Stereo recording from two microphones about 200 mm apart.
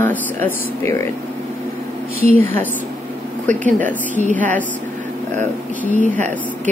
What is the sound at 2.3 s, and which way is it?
Speech, 10° left (ahead or behind).